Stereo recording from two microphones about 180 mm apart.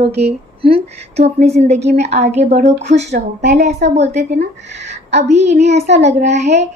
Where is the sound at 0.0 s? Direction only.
35° right (ahead or behind).